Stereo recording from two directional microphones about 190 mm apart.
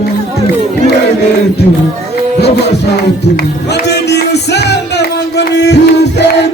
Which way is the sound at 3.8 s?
60° left (ahead or behind).